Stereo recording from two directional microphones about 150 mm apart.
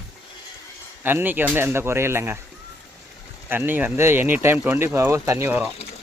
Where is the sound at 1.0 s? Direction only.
15° right (ahead or behind).